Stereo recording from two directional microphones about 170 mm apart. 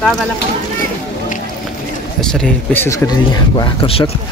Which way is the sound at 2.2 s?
5° left (ahead or behind).